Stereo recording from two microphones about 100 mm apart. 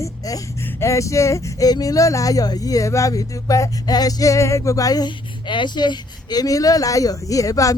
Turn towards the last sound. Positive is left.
turn(degrees=35)  # may be behind; listen again after turning